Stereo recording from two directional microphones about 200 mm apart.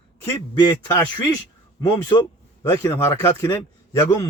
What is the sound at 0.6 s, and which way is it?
Speech, 20° left (ahead or behind).